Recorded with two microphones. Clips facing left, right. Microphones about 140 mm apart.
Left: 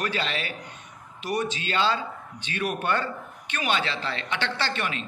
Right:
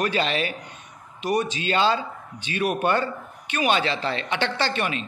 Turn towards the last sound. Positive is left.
turn(degrees=-15)  # may be behind; listen again after turning